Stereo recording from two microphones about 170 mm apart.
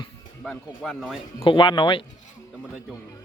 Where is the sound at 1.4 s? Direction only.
30° left (ahead or behind).